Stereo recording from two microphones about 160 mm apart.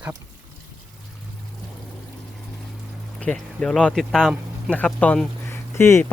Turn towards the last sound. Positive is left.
turn(degrees=15)  # may be behind; listen again after turning